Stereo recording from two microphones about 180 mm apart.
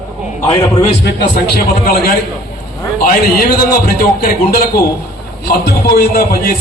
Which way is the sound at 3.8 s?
55° left (ahead or behind).